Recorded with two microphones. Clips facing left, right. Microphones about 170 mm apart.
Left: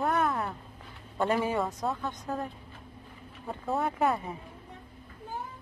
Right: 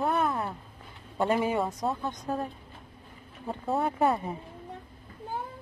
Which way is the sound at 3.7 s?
30° right (ahead or behind).